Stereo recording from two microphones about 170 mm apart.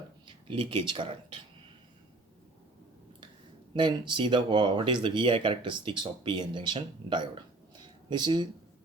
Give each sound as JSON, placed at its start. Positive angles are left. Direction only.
{"t": 0.3, "sound": "speech", "side_deg": -30}
{"t": 3.8, "sound": "speech", "side_deg": -25}